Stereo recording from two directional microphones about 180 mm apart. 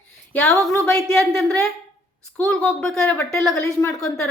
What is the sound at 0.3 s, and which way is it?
A woman's voice, 10° left (ahead or behind).